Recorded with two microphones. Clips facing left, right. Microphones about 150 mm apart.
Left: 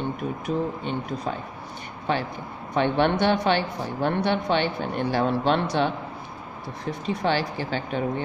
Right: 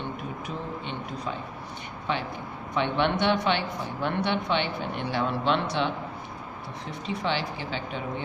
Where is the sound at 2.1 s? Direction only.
40° left (ahead or behind).